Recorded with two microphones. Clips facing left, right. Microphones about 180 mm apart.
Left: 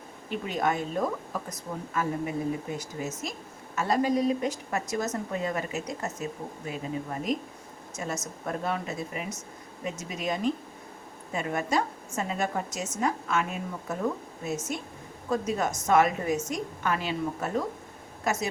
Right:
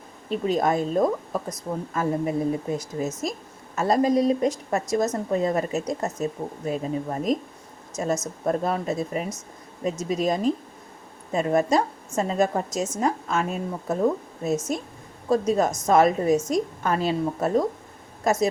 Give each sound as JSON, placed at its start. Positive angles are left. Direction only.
{"t": 0.3, "sound": "speech", "side_deg": -35}